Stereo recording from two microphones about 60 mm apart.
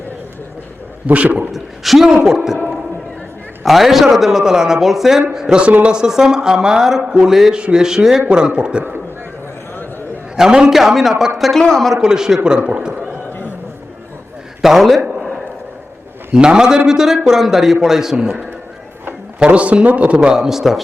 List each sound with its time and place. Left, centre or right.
1.0 s a man's voice: right
1.5 s a man's voice: centre
3.6 s a man's voice: centre
10.3 s a man's voice: centre
11.9 s speech: centre
14.6 s a man's voice: centre
16.3 s speech: centre
19.4 s a man's voice: centre
20.1 s speech: centre